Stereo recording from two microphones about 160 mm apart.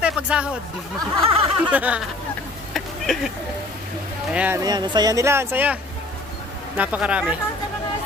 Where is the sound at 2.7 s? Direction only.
Centre (ahead or behind).